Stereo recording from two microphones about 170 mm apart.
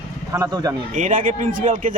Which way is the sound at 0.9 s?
50° right (ahead or behind).